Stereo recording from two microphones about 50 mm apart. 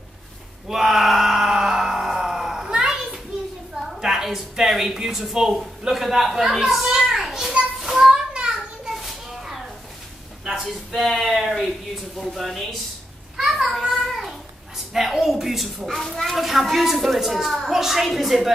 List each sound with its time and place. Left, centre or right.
0.7 s a sound: centre
3.8 s a woman's voice: centre
7.0 s children playing: centre
7.8 s a sound: centre
8.8 s children playing: centre
10.5 s a child's voice: centre
13.4 s child singing: centre
14.9 s a child's voice: centre